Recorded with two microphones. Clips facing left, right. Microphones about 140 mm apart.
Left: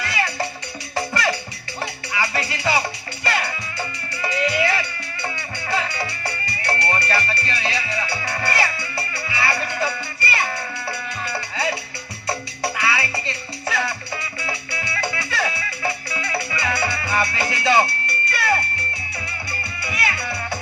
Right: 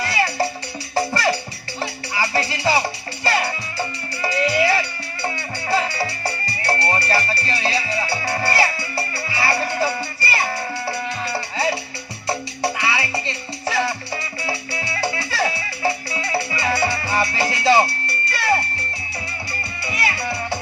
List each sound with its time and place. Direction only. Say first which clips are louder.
0.0 s music: right 4 dB; 35° right (ahead or behind)
19.8 s music: right 2 dB; 30° right (ahead or behind)